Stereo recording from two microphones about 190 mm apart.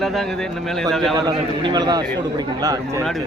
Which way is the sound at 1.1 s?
25° right (ahead or behind).